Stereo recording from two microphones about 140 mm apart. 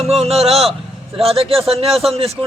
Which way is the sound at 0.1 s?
45° right (ahead or behind).